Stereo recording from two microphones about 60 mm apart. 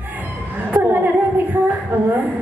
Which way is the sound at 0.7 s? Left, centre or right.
Right.